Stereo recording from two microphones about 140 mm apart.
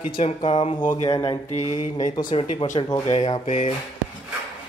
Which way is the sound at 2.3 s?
40° left (ahead or behind).